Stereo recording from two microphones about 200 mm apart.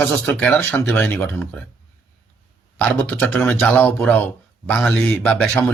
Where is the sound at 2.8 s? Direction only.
10° left (ahead or behind).